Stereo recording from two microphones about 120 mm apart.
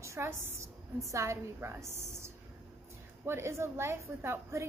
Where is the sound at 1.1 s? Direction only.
25° right (ahead or behind).